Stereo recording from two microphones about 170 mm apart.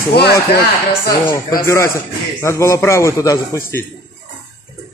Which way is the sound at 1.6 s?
15° left (ahead or behind).